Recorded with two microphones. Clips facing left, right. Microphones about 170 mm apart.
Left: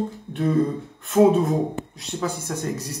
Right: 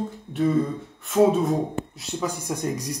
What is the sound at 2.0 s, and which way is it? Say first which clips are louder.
Speech: left 3 dB; 10° right (ahead or behind).